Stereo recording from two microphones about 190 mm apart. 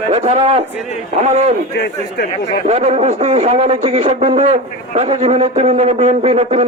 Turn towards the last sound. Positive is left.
turn(degrees=-35)  # may be behind; listen again after turning